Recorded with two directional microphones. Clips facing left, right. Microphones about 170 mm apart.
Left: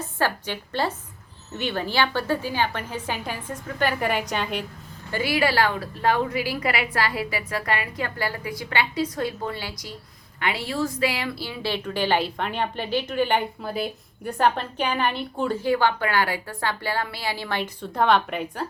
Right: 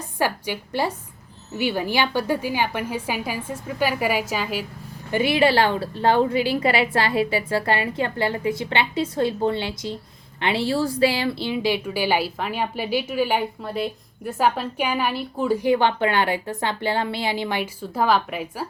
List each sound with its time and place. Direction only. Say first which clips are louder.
0.2 s a woman's voice: right 2 dB; 10° right (ahead or behind)
5.1 s a woman's voice: right 4 dB; 25° right (ahead or behind); by 18.7 s 5° right (ahead or behind)